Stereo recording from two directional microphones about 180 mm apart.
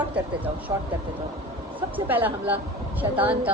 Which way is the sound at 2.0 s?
10° right (ahead or behind).